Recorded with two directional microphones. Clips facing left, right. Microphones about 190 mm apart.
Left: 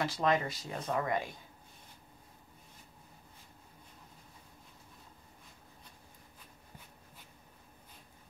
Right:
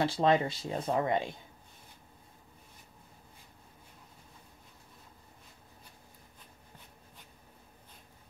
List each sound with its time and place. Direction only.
0.0 s speech: 30° right (ahead or behind)